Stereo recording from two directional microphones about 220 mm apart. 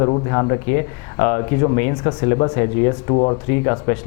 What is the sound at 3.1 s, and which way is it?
Speech, 25° left (ahead or behind).